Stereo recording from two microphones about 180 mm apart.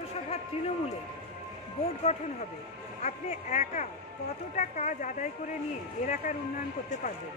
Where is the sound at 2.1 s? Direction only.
35° left (ahead or behind).